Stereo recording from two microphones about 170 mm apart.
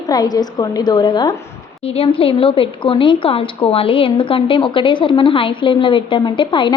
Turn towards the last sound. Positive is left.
turn(degrees=30)  # may be behind; listen again after turning